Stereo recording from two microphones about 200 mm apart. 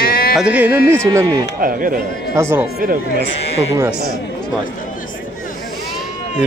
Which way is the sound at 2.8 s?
45° right (ahead or behind).